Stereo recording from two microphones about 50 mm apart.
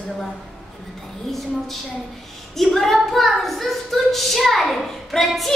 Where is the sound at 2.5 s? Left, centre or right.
Centre.